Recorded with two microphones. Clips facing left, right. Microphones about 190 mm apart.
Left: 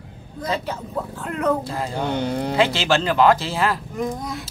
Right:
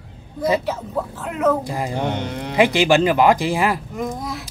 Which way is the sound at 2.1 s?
35° left (ahead or behind).